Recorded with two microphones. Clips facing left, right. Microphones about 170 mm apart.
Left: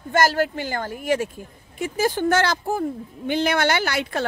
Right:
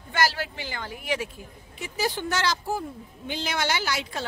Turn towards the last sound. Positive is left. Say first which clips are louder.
# left 6 dB
turn(degrees=60)  # may be behind; listen again after turning